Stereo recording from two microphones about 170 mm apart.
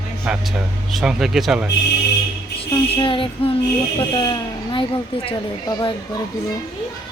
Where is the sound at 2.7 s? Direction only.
30° left (ahead or behind).